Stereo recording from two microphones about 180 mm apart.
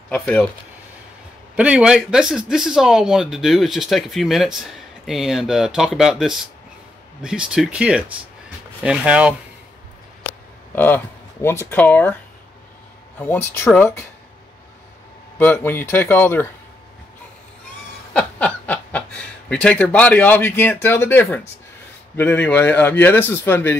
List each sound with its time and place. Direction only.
0.1 s speech: 10° left (ahead or behind)
1.6 s speech: 5° right (ahead or behind)
10.7 s speech: 10° left (ahead or behind)
13.2 s speech: 10° left (ahead or behind)
15.3 s speech: 10° left (ahead or behind)
18.1 s snicker: 5° left (ahead or behind)
19.5 s speech: 5° left (ahead or behind)